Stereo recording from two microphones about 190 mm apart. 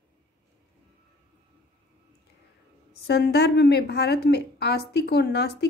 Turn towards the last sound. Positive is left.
turn(degrees=60)  # may be behind; listen again after turning